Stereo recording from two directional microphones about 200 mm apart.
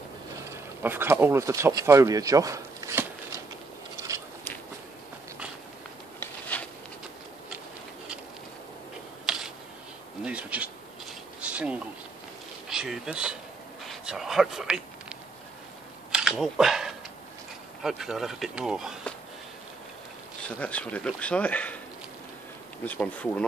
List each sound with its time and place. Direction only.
0.8 s speech: 10° right (ahead or behind)
6.5 s patter: 5° left (ahead or behind)
9.2 s a sound: 5° right (ahead or behind)
10.2 s rub: 5° right (ahead or behind)
12.6 s bee: centre (ahead or behind)
13.8 s a sound: centre (ahead or behind)
17.8 s speech: centre (ahead or behind)
20.4 s speech: 5° left (ahead or behind)
22.8 s speech: 10° left (ahead or behind)